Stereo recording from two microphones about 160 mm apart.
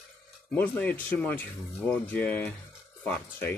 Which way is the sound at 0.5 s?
10° left (ahead or behind).